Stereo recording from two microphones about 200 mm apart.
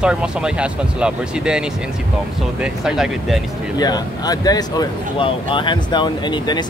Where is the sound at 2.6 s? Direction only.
5° right (ahead or behind).